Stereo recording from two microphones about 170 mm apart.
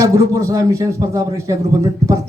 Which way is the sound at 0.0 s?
15° right (ahead or behind).